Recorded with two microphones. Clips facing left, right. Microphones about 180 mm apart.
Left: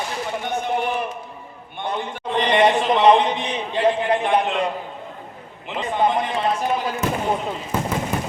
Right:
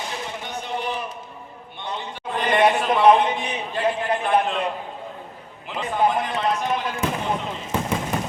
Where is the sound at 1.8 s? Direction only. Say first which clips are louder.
Left 5 dB; 50° left (ahead or behind).